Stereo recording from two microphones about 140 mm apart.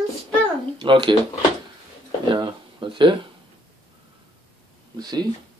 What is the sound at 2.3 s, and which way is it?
Speech, 35° right (ahead or behind).